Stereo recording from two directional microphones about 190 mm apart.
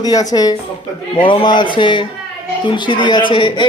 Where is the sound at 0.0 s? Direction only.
20° left (ahead or behind).